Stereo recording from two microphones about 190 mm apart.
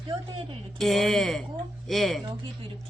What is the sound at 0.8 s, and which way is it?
Speech, centre (ahead or behind).